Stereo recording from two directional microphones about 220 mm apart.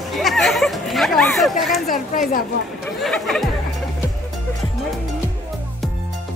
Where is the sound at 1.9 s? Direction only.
40° left (ahead or behind).